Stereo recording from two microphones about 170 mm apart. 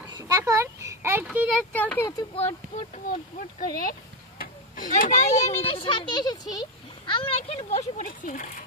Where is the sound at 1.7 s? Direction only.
10° left (ahead or behind).